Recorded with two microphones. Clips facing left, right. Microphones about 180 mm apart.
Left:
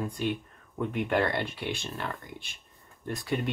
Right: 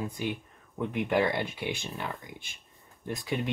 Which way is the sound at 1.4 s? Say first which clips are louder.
Even; 10° right (ahead or behind).